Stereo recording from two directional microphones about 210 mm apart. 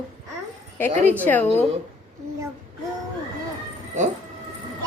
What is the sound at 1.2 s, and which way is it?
Speech, 10° left (ahead or behind).